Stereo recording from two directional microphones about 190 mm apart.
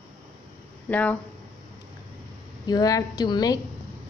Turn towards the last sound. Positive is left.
turn(degrees=20)  # may be behind; listen again after turning